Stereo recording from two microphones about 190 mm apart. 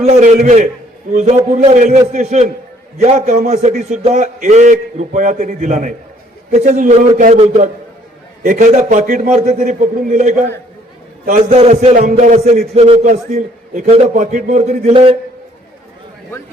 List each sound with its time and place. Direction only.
0.0 s a man's voice: 35° right (ahead or behind)